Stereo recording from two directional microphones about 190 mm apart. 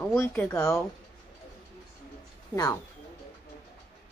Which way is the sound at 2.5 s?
15° left (ahead or behind).